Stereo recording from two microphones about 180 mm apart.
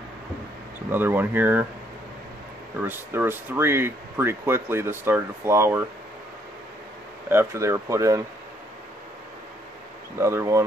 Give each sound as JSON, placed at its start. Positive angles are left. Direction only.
{"t": 0.9, "sound": "speech", "side_deg": -10}
{"t": 2.8, "sound": "speech", "side_deg": -10}
{"t": 7.2, "sound": "speech", "side_deg": -15}
{"t": 10.1, "sound": "speech", "side_deg": -15}